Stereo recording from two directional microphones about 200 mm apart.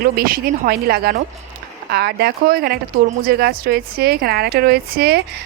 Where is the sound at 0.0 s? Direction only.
45° right (ahead or behind).